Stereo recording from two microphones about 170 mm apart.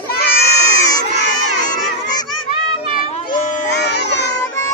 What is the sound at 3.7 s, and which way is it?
Baby cry, 80° left.